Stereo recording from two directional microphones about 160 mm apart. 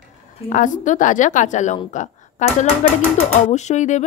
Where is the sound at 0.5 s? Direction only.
55° left (ahead or behind).